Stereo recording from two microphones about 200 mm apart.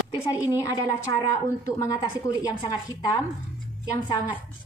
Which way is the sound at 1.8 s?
15° left (ahead or behind).